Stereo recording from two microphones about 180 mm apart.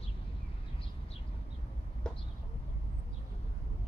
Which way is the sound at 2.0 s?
5° left (ahead or behind).